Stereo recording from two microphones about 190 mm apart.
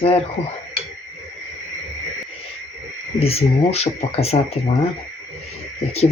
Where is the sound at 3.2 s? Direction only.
35° left (ahead or behind).